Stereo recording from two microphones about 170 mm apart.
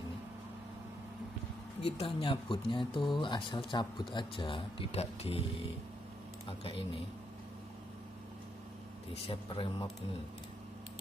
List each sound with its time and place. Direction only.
1.8 s speech: 35° left (ahead or behind)
9.1 s speech: 35° left (ahead or behind)